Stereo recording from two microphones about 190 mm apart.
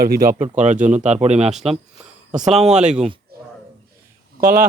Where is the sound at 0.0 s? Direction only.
50° right (ahead or behind); by 1.5 s 35° right (ahead or behind).